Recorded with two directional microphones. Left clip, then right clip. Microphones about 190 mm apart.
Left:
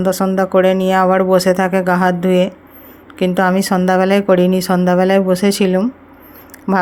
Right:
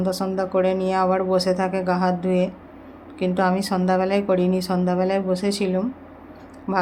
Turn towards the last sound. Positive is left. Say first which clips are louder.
# left 7 dB
turn(degrees=40)  # may be behind; listen again after turning